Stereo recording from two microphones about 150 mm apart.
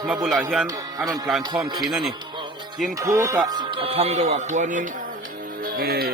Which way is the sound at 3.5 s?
30° right (ahead or behind).